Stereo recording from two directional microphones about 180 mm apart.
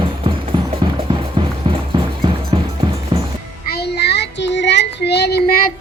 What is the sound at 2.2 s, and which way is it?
Music, 25° right (ahead or behind).